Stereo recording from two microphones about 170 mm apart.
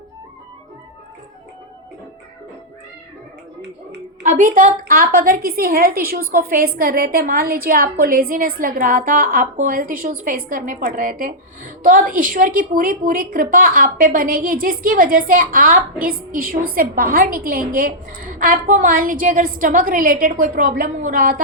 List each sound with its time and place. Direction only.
4.2 s a woman's voice: 50° right (ahead or behind)